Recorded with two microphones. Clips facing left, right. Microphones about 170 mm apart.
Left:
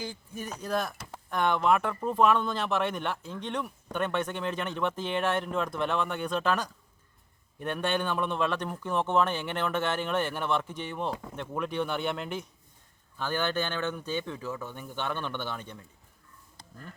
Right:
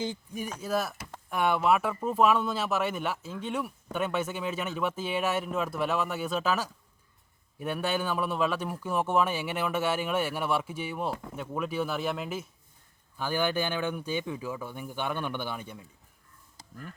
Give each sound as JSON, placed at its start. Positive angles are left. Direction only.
{"t": 0.0, "sound": "speech", "side_deg": -20}
{"t": 0.6, "sound": "speech", "side_deg": -5}